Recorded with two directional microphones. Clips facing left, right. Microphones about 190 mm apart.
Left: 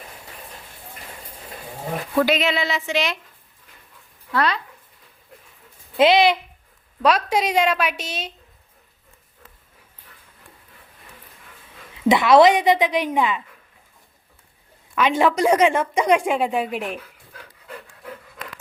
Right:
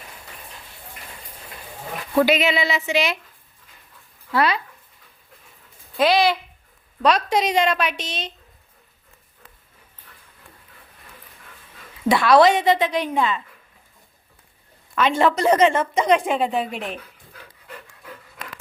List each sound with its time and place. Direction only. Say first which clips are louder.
2.1 s a woman's voice: right 2 dB; 5° right (ahead or behind)
4.3 s speech: right 2 dB; 10° right (ahead or behind)
6.0 s speech: left 3 dB; 20° left (ahead or behind)
7.0 s speech: even; 5° left (ahead or behind)
12.0 s speech: left 1 dB; 20° left (ahead or behind)
14.9 s speech: even; 10° left (ahead or behind)